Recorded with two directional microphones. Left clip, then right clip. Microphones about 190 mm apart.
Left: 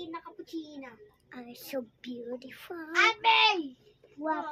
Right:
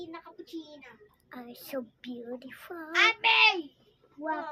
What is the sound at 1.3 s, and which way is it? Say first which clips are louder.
A child's voice: even; 15° right (ahead or behind).